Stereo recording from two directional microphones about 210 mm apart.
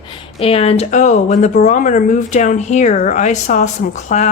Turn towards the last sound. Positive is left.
turn(degrees=35)  # may be behind; listen again after turning